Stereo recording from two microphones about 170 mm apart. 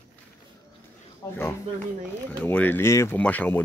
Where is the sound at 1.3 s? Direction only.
15° left (ahead or behind).